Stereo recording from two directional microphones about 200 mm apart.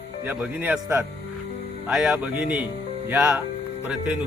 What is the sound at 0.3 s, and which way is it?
Speech, 10° right (ahead or behind).